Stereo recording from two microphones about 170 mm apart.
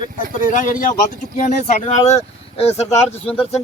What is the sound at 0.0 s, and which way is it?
Speech, 50° left (ahead or behind).